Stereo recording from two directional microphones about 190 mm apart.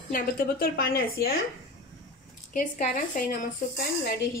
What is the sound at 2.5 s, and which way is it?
Speech, 45° left (ahead or behind).